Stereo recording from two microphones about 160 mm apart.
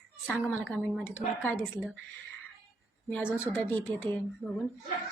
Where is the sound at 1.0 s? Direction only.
15° left (ahead or behind).